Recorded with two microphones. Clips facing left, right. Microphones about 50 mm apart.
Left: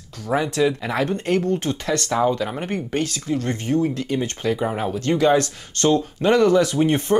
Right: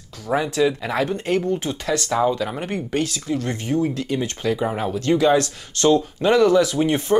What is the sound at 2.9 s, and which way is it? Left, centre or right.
Speech, left.